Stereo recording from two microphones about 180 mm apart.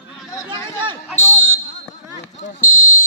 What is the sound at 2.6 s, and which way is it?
Fire alarm, 45° left (ahead or behind).